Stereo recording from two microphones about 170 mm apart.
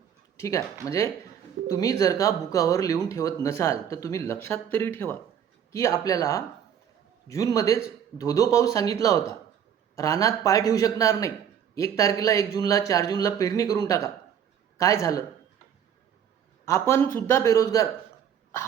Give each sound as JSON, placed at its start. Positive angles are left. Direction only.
{"t": 0.3, "sound": "speech", "side_deg": 20}
{"t": 16.6, "sound": "speech", "side_deg": 15}